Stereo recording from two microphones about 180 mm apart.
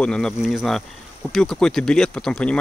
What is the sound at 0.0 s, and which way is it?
Speech, 5° left (ahead or behind).